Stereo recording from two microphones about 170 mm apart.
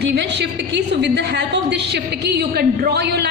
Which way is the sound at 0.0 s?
90° right.